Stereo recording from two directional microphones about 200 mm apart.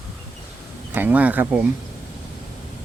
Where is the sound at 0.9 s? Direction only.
10° right (ahead or behind).